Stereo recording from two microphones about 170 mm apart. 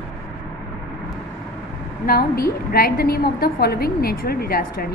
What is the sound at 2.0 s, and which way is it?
A woman's voice, 65° left (ahead or behind).